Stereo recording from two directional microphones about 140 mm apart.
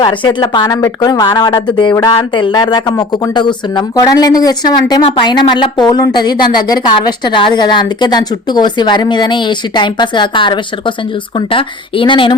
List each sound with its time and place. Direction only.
0.0 s speech: 35° left (ahead or behind)